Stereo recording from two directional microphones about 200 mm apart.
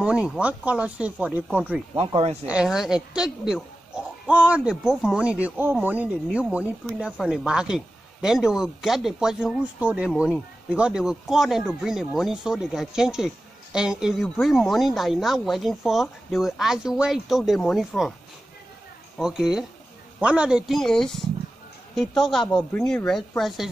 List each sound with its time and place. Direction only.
0.0 s speech: 5° right (ahead or behind)
2.0 s speech: 25° right (ahead or behind)
2.4 s speech: 5° right (ahead or behind)
19.1 s speech: 5° right (ahead or behind)